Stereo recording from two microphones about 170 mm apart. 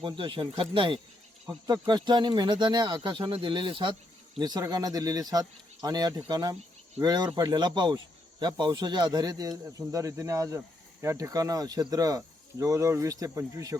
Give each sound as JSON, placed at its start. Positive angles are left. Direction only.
{"t": 0.0, "sound": "speech", "side_deg": -30}